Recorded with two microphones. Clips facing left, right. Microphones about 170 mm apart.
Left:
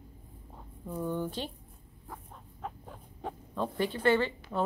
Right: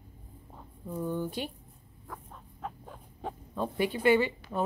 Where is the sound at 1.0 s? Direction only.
10° right (ahead or behind).